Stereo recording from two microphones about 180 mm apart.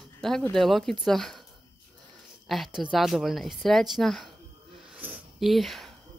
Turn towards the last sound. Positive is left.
turn(degrees=0)  # may be behind; listen again after turning